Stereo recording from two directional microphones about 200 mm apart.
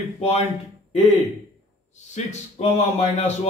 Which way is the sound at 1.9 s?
35° left (ahead or behind).